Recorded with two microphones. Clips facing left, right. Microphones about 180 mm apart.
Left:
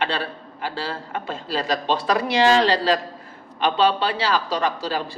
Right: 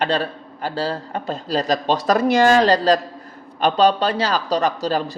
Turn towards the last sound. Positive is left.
turn(degrees=-45)  # may be behind; listen again after turning